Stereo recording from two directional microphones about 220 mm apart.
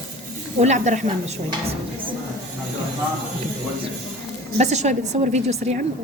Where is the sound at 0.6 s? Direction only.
35° right (ahead or behind).